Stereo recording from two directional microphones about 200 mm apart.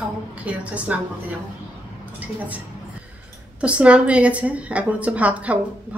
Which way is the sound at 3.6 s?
5° right (ahead or behind).